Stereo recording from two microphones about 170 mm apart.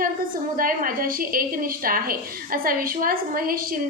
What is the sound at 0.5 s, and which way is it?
A woman's voice, 55° right (ahead or behind).